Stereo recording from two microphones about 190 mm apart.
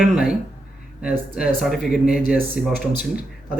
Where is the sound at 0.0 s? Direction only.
5° right (ahead or behind).